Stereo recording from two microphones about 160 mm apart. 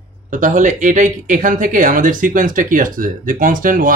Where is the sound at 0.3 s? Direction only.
50° right (ahead or behind).